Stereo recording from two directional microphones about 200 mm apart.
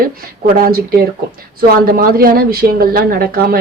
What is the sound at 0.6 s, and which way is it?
Speech, 45° right (ahead or behind).